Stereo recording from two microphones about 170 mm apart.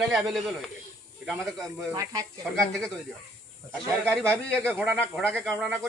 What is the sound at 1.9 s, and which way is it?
Speech, 20° right (ahead or behind).